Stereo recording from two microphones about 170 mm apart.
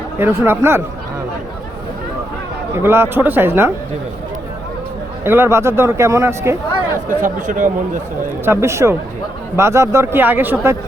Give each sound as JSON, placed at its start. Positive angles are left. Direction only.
{"t": 0.2, "sound": "a man's voice", "side_deg": -15}
{"t": 2.7, "sound": "a man's voice", "side_deg": -15}
{"t": 5.2, "sound": "a man's voice", "side_deg": -15}
{"t": 7.1, "sound": "speech", "side_deg": -50}
{"t": 8.4, "sound": "a man's voice", "side_deg": -15}